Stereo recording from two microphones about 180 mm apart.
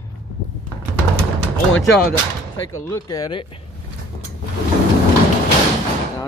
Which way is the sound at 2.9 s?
20° left (ahead or behind).